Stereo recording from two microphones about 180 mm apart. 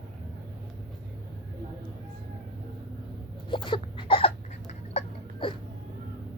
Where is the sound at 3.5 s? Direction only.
25° left (ahead or behind).